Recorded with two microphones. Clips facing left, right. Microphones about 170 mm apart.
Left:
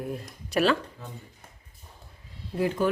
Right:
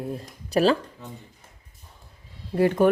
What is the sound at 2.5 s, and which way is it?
Speech, 60° right (ahead or behind).